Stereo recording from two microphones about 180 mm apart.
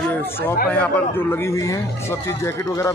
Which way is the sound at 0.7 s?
10° left (ahead or behind).